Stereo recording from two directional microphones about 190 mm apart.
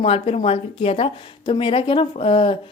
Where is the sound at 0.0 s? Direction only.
30° left (ahead or behind).